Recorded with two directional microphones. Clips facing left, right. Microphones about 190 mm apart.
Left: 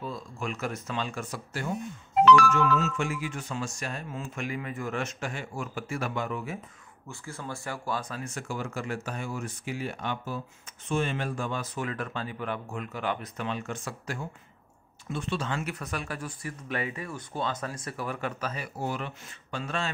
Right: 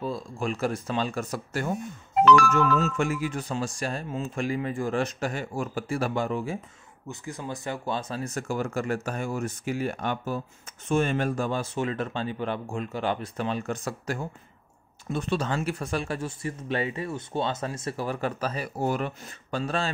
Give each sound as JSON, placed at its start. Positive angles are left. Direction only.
{"t": 0.0, "sound": "speech", "side_deg": -35}
{"t": 7.1, "sound": "speech", "side_deg": -20}
{"t": 8.2, "sound": "speech", "side_deg": -40}